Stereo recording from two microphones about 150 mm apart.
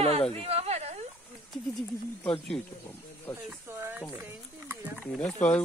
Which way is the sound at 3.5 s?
15° right (ahead or behind).